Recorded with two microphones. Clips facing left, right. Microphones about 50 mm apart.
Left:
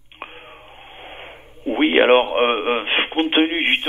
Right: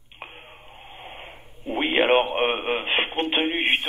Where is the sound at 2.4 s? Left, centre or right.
Left.